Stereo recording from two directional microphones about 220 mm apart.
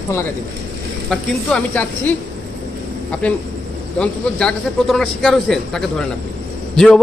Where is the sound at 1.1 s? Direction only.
5° left (ahead or behind).